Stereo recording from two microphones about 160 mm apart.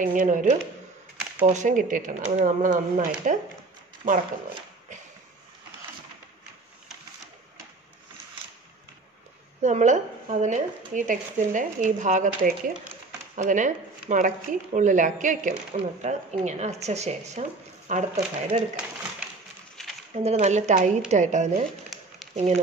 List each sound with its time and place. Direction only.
0.0 s speech: 55° right (ahead or behind)
9.6 s speech: 50° right (ahead or behind)
20.2 s speech: 45° right (ahead or behind)